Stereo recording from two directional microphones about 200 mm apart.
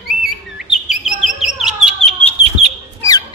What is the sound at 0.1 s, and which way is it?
Chirp, centre (ahead or behind).